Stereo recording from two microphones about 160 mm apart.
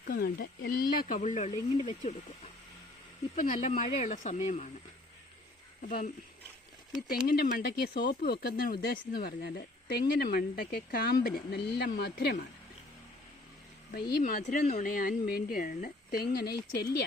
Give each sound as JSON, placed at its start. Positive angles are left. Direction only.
{"t": 0.1, "sound": "speech", "side_deg": 75}
{"t": 3.3, "sound": "a woman's voice", "side_deg": 55}
{"t": 5.8, "sound": "a woman's voice", "side_deg": 60}
{"t": 7.3, "sound": "speech", "side_deg": 70}
{"t": 14.2, "sound": "a woman's voice", "side_deg": 60}
{"t": 16.3, "sound": "speech", "side_deg": 90}